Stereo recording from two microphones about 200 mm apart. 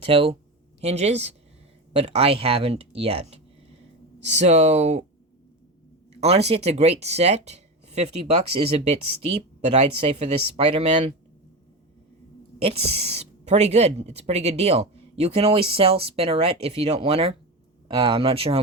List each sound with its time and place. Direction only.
0.0 s a woman's voice: 30° right (ahead or behind)
6.1 s a woman's voice: 30° right (ahead or behind)
12.5 s a woman's voice: 30° right (ahead or behind)